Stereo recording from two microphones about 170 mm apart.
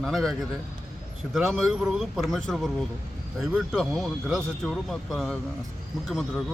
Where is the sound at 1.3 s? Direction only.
Centre (ahead or behind).